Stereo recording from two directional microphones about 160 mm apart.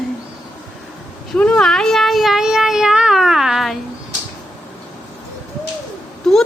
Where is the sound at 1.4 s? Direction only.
5° left (ahead or behind).